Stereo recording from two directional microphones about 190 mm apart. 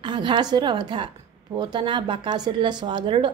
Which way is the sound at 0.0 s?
25° right (ahead or behind).